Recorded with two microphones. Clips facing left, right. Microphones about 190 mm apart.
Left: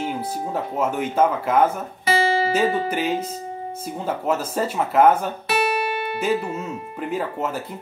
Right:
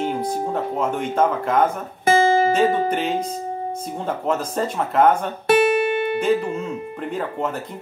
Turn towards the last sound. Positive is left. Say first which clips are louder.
# even
turn(degrees=5)  # may be behind; listen again after turning